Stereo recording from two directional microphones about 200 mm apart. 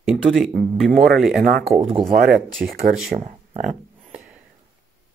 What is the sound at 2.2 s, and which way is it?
Speech, 50° right (ahead or behind).